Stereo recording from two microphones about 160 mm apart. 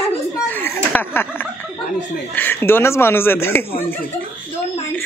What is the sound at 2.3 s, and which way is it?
Speech, 10° left (ahead or behind).